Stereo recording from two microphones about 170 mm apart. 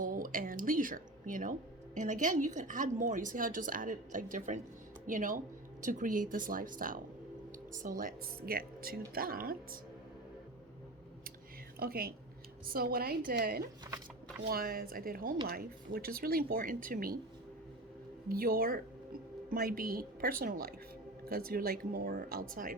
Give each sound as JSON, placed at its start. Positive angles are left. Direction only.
{"t": 0.0, "sound": "a sound", "side_deg": -55}
{"t": 2.0, "sound": "a woman's voice", "side_deg": -50}
{"t": 11.8, "sound": "speech", "side_deg": -60}
{"t": 18.3, "sound": "speech", "side_deg": -60}